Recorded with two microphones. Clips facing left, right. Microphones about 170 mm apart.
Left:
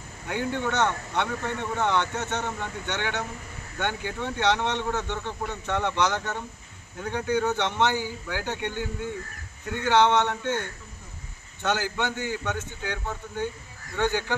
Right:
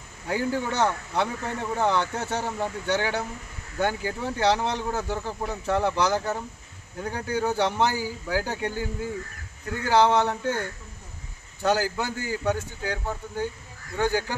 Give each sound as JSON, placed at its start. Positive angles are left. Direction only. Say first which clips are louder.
{"t": 0.3, "sound": "speech", "louder": "right 1 dB", "side_deg": -35}
{"t": 9.8, "sound": "speech", "louder": "right 1 dB", "side_deg": -35}